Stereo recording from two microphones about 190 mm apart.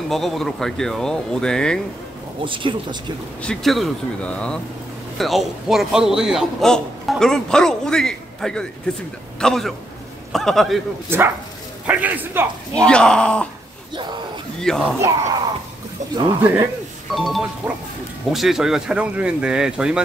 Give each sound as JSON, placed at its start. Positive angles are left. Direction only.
{"t": 0.1, "sound": "a man's voice", "side_deg": 0}
{"t": 2.4, "sound": "speech", "side_deg": -25}
{"t": 3.4, "sound": "a man's voice", "side_deg": 0}
{"t": 11.1, "sound": "a man's voice", "side_deg": -10}
{"t": 12.8, "sound": "a man's voice", "side_deg": 5}
{"t": 13.9, "sound": "speech", "side_deg": -25}
{"t": 14.6, "sound": "a man's voice", "side_deg": 5}
{"t": 15.0, "sound": "a man's voice", "side_deg": -15}
{"t": 17.1, "sound": "a man's voice", "side_deg": 0}